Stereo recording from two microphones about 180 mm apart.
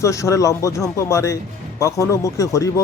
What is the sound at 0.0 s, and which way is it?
Speech, 15° left (ahead or behind).